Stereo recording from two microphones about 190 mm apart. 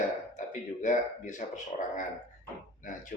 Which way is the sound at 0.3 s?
40° left (ahead or behind).